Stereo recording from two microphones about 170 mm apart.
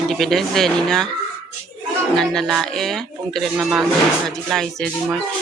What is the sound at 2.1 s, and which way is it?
Speech, centre (ahead or behind).